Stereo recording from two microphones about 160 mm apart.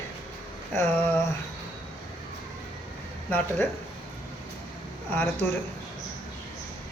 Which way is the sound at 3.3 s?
10° left (ahead or behind).